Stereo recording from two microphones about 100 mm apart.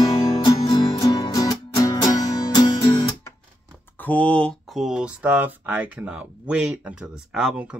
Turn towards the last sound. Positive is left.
turn(degrees=-10)  # may be behind; listen again after turning